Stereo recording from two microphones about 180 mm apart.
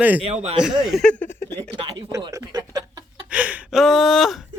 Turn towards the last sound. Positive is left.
turn(degrees=0)  # may be behind; listen again after turning